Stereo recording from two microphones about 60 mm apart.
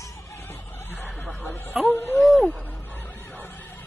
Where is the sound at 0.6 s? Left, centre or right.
Left.